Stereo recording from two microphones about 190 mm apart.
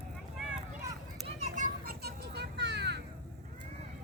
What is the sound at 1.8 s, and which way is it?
Children playing, 60° right (ahead or behind).